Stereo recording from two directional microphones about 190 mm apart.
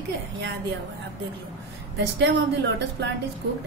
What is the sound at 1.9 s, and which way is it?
A woman's voice, 65° right (ahead or behind).